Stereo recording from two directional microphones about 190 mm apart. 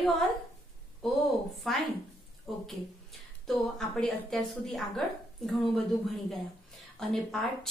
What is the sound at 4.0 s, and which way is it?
A woman's voice, centre (ahead or behind).